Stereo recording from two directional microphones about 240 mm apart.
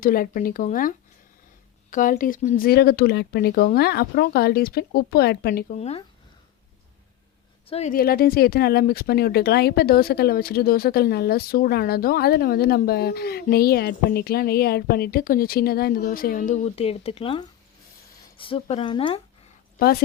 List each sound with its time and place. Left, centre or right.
0.0 s speech: left
7.7 s speech: left